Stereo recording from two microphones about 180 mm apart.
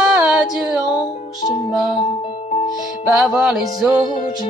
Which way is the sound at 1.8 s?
25° left (ahead or behind).